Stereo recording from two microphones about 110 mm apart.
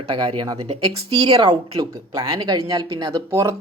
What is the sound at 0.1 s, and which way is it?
Speech, 50° right (ahead or behind).